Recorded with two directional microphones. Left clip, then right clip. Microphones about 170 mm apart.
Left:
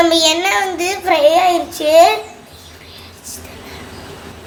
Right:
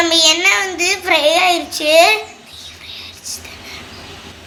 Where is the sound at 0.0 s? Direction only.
40° left (ahead or behind).